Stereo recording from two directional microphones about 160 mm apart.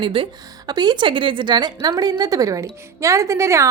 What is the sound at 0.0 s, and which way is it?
A woman's voice, 35° right (ahead or behind).